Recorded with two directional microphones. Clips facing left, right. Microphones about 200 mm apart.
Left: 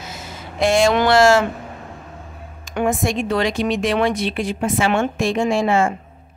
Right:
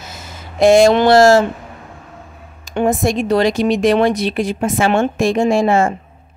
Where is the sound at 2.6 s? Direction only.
35° right (ahead or behind).